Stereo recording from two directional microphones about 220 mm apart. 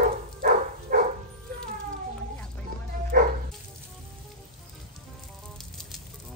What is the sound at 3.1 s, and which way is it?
Bow-wow, 40° right (ahead or behind).